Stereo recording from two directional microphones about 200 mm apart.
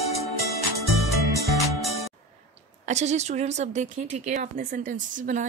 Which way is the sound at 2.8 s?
35° right (ahead or behind).